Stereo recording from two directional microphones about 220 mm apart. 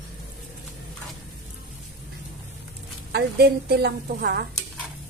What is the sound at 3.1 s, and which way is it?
Speech, 45° right (ahead or behind).